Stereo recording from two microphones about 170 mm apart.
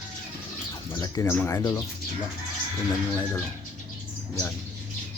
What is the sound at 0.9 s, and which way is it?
Speech, 20° left (ahead or behind).